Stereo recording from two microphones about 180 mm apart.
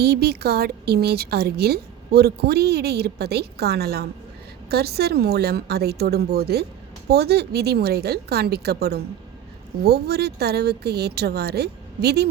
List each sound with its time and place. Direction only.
0.0 s a woman's voice: 60° right (ahead or behind)